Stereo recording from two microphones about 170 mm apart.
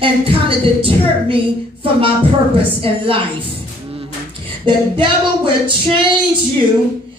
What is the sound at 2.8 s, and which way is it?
Speech, 35° right (ahead or behind).